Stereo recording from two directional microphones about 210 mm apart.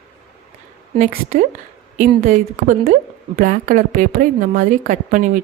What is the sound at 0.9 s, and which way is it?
A woman's voice, 35° right (ahead or behind).